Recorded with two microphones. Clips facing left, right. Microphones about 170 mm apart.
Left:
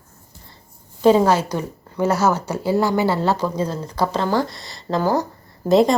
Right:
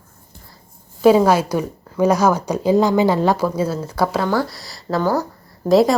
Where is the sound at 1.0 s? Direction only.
10° right (ahead or behind).